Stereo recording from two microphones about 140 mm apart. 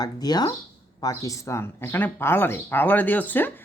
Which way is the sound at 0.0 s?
30° left (ahead or behind).